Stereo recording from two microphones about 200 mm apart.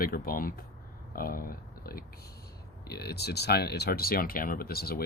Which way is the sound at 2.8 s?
55° left (ahead or behind).